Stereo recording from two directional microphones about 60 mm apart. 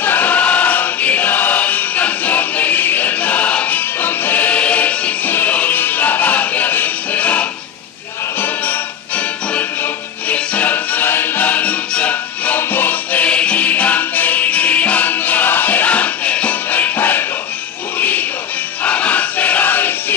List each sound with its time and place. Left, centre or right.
0.0 s choir: left
8.4 s music: left
10.2 s music: left
17.9 s shuffle: left
18.9 s battle cry: left